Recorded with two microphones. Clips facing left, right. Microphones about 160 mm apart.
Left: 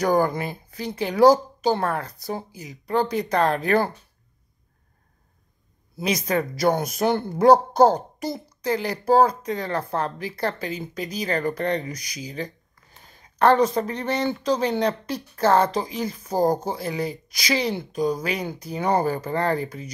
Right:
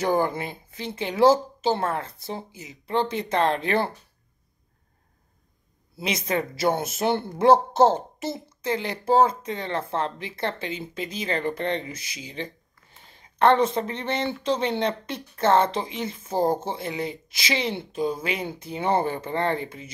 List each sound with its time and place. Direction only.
0.3 s speech: 25° right (ahead or behind)
6.0 s speech: 25° right (ahead or behind)
9.0 s speech: 40° left (ahead or behind)
9.3 s speech: 25° right (ahead or behind)
11.8 s speech: 40° left (ahead or behind)
13.0 s speech: 25° right (ahead or behind)
16.3 s speech: 40° left (ahead or behind)
16.7 s speech: 25° right (ahead or behind)
17.9 s speech: 40° left (ahead or behind)
18.2 s speech: 25° right (ahead or behind)